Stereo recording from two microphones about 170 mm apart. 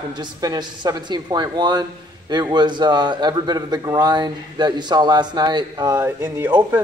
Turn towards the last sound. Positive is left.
turn(degrees=-10)  # may be behind; listen again after turning